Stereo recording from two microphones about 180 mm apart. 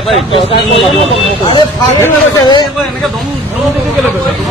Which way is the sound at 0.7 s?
30° left (ahead or behind).